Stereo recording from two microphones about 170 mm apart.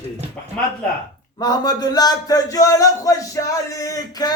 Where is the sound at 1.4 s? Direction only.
25° left (ahead or behind).